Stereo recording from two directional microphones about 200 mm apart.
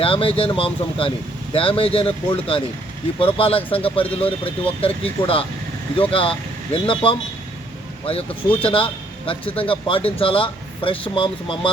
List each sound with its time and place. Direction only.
0.0 s speech: 25° left (ahead or behind)
4.0 s speech: 10° left (ahead or behind)
4.8 s a man's voice: 30° left (ahead or behind)